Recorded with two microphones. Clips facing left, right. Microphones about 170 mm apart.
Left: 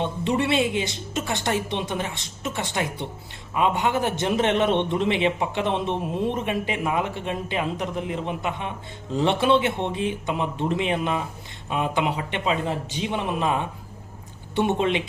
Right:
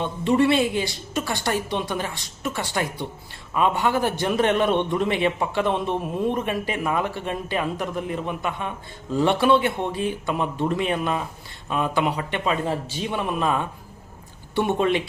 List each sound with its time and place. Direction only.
0.0 s a woman's voice: 20° left (ahead or behind)